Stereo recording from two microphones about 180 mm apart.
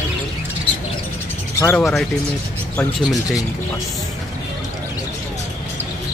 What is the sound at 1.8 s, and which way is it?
Speech, centre (ahead or behind).